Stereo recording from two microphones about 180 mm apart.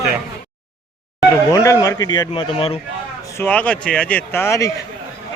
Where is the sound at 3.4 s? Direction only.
5° left (ahead or behind).